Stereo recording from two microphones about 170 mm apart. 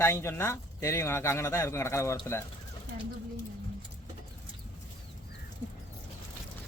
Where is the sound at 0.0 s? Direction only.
15° left (ahead or behind).